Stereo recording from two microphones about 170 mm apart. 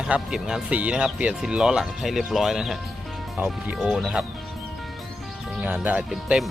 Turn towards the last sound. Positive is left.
turn(degrees=-5)  # may be behind; listen again after turning